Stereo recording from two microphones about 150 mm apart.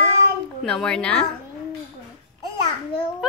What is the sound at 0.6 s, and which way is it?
Speech, 5° left (ahead or behind).